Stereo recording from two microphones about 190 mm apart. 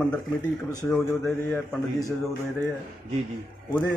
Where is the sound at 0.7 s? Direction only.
20° left (ahead or behind).